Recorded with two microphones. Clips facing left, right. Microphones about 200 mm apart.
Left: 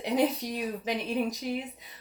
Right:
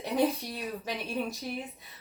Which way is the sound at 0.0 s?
15° left (ahead or behind).